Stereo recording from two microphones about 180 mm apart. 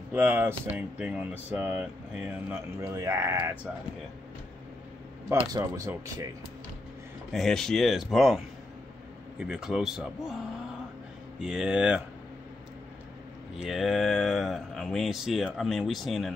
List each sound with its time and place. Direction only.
0.1 s speech: 10° right (ahead or behind)
2.8 s speech: 15° right (ahead or behind)
5.3 s speech: 20° right (ahead or behind)
7.3 s speech: centre (ahead or behind)
13.6 s speech: centre (ahead or behind)